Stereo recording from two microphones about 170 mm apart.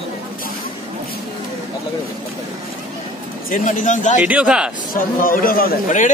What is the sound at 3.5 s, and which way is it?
Speech, 50° left (ahead or behind).